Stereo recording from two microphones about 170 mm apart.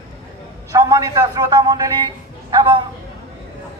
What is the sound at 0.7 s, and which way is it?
A man's voice, 20° right (ahead or behind).